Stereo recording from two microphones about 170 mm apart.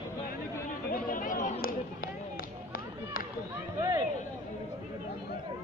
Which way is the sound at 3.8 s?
25° right (ahead or behind).